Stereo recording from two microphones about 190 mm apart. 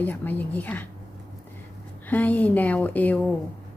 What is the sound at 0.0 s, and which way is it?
Speech, 10° left (ahead or behind).